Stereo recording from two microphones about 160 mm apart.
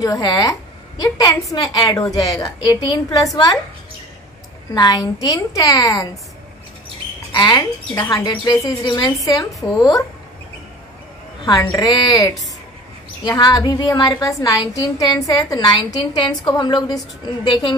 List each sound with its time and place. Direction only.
0.0 s a woman's voice: 25° left (ahead or behind)
4.7 s a woman's voice: 25° left (ahead or behind)
7.3 s a woman's voice: 25° left (ahead or behind)
11.4 s a woman's voice: 25° left (ahead or behind)